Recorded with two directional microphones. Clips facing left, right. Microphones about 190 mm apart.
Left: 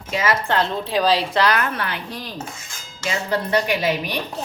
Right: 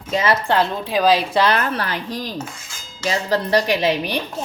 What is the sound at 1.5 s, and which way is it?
A woman's voice, 35° right (ahead or behind).